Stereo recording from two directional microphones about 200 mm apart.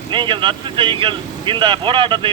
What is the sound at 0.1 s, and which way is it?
A man's voice, 25° right (ahead or behind).